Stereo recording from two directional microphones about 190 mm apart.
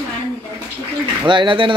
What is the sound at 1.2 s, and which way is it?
Speech, 25° right (ahead or behind).